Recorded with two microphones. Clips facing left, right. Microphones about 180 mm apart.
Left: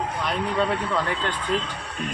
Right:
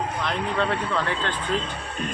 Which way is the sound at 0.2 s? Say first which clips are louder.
Left 2 dB; 10° left (ahead or behind).